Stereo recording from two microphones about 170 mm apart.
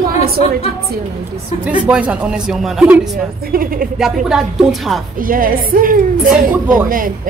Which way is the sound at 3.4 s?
60° right (ahead or behind).